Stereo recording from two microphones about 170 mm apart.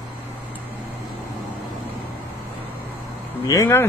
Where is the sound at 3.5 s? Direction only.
15° left (ahead or behind).